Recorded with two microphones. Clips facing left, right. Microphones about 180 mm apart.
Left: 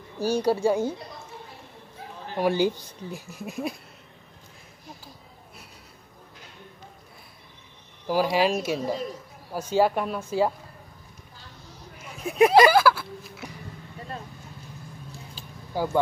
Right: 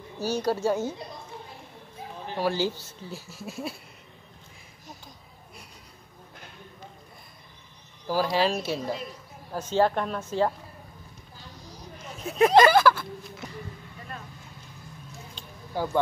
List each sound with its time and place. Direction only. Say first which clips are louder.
0.2 s speech: left 3 dB; 10° left (ahead or behind)
2.3 s speech: left 4 dB; 15° left (ahead or behind)
8.1 s speech: left 2 dB; 15° left (ahead or behind)
12.0 s speech: left 3 dB; 10° left (ahead or behind)
15.3 s a sound: left 2 dB; 10° left (ahead or behind)